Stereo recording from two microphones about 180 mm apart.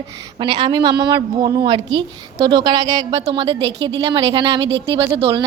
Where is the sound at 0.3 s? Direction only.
30° right (ahead or behind).